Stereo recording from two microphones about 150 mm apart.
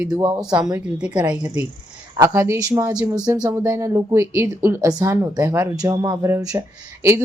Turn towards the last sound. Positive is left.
turn(degrees=-20)  # may be behind; listen again after turning